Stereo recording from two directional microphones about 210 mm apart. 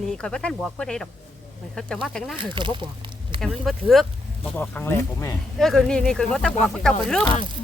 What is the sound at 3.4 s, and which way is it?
Speech, centre (ahead or behind).